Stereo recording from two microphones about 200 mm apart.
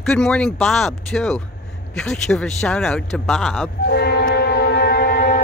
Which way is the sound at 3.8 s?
50° left (ahead or behind).